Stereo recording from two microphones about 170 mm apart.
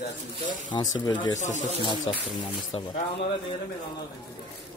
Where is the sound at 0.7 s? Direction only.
25° left (ahead or behind).